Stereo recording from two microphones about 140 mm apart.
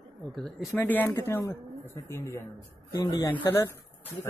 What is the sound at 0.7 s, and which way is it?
Speech, 10° left (ahead or behind).